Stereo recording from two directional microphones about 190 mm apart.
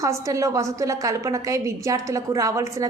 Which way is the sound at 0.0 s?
15° right (ahead or behind).